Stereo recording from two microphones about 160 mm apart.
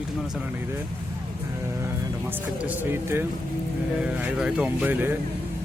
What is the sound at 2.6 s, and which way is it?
Speech, 15° right (ahead or behind).